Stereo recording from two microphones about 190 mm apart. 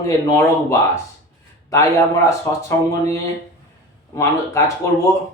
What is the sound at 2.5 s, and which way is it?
Speech, 15° left (ahead or behind).